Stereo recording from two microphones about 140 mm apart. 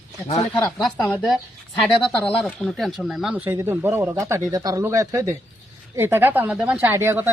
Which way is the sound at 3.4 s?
15° right (ahead or behind).